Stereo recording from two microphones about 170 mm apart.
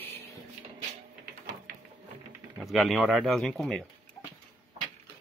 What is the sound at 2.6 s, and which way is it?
Speech, centre (ahead or behind).